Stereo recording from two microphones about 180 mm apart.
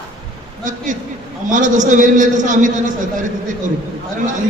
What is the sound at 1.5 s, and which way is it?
A man's voice, 45° right (ahead or behind).